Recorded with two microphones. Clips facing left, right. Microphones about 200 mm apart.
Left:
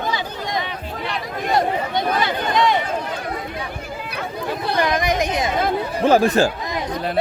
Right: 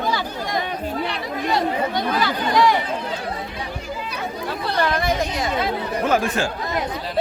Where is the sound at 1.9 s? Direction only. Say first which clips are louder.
Left 1 dB; 20° left (ahead or behind).